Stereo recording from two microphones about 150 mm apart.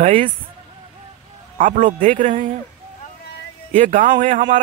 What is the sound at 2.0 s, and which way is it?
Speech, 55° right (ahead or behind).